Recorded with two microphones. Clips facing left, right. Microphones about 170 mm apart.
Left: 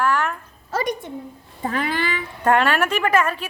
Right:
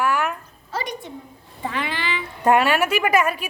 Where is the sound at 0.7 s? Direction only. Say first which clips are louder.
Left 5 dB; 50° left (ahead or behind).